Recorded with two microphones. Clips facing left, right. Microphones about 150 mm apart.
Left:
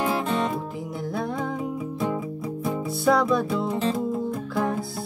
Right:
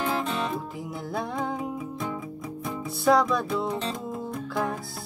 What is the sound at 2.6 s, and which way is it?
Music, centre (ahead or behind).